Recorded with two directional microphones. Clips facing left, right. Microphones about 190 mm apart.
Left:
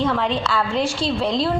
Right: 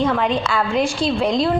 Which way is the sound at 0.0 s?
15° right (ahead or behind).